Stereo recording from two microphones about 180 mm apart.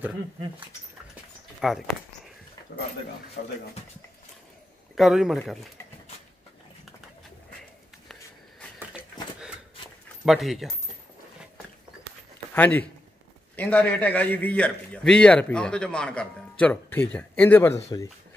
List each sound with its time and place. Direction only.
1.6 s speech: centre (ahead or behind)
3.4 s speech: 60° left (ahead or behind)
4.9 s a man's voice: centre (ahead or behind)
8.7 s a sound: 5° right (ahead or behind)
10.2 s a man's voice: centre (ahead or behind)
12.5 s a man's voice: 10° left (ahead or behind)